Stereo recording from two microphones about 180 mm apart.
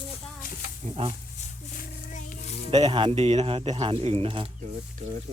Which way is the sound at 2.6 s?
35° right (ahead or behind).